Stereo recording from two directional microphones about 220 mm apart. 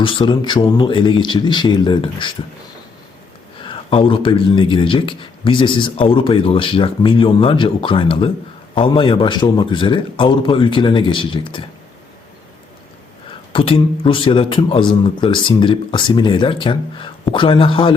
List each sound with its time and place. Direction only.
0.0 s speech: 20° left (ahead or behind)
3.6 s speech: 25° left (ahead or behind)
13.5 s speech: 25° left (ahead or behind)